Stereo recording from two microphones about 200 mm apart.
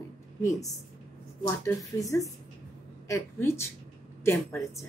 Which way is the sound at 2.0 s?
15° left (ahead or behind).